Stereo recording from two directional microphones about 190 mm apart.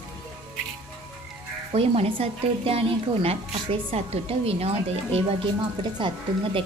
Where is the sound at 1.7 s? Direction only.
30° right (ahead or behind).